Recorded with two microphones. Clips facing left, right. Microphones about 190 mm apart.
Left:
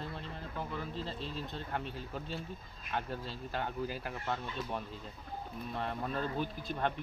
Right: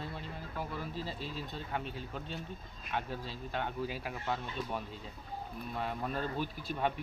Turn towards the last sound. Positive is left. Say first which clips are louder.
# even
turn(degrees=-5)  # may be behind; listen again after turning